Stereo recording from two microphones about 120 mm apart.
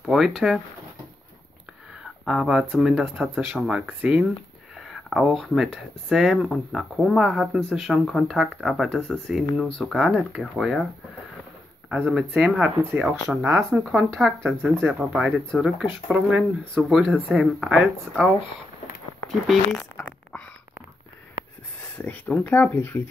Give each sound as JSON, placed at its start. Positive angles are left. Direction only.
{"t": 0.0, "sound": "a sound", "side_deg": 0}
{"t": 2.2, "sound": "speech", "side_deg": -5}
{"t": 12.1, "sound": "speech", "side_deg": -5}
{"t": 12.8, "sound": "speech", "side_deg": -15}
{"t": 19.4, "sound": "a sound", "side_deg": 0}
{"t": 21.9, "sound": "speech", "side_deg": 15}